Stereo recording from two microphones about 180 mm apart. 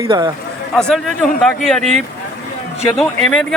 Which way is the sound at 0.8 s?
Centre (ahead or behind).